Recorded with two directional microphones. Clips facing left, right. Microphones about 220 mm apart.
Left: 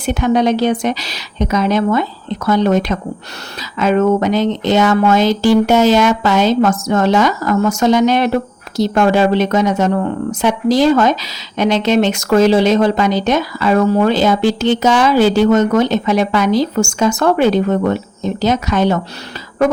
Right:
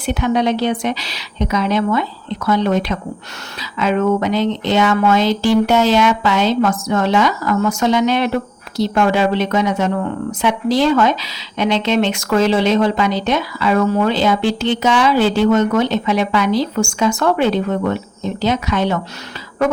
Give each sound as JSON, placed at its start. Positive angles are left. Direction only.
{"t": 0.0, "sound": "speech", "side_deg": 45}